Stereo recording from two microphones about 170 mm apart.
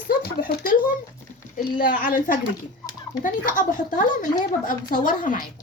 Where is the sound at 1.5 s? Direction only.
55° left (ahead or behind).